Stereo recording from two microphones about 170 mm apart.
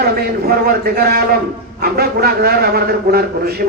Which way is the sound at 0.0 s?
65° right (ahead or behind).